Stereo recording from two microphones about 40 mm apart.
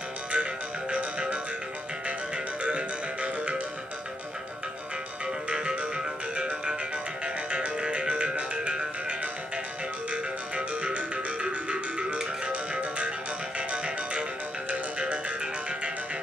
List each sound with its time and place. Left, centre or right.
0.3 s music: right
5.2 s music: right
10.1 s music: right